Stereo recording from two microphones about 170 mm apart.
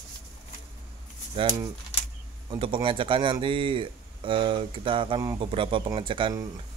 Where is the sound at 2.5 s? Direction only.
30° right (ahead or behind).